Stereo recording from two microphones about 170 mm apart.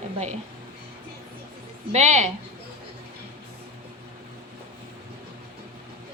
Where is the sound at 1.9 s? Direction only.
40° right (ahead or behind).